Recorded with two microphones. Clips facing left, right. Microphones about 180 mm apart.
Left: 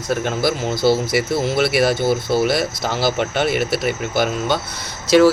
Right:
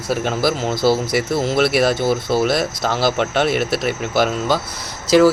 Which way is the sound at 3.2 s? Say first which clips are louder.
Right 1 dB; 5° left (ahead or behind).